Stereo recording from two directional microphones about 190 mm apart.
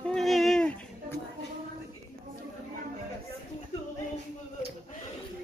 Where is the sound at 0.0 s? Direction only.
Centre (ahead or behind).